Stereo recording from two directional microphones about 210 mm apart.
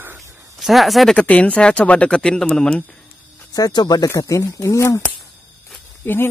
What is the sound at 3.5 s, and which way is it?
Speech, 20° left (ahead or behind).